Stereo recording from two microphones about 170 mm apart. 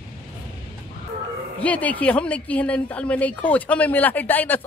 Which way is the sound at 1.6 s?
10° left (ahead or behind).